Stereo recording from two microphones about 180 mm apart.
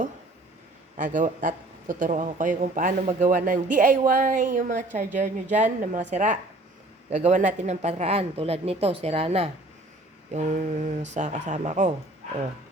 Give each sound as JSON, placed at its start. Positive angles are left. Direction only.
{"t": 0.9, "sound": "a man's voice", "side_deg": -45}
{"t": 10.3, "sound": "a man's voice", "side_deg": -45}